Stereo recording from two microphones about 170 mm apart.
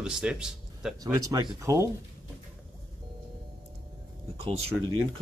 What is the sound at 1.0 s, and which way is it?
Speech, 20° right (ahead or behind).